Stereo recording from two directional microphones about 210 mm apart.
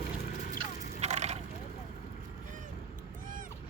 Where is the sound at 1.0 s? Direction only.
35° right (ahead or behind).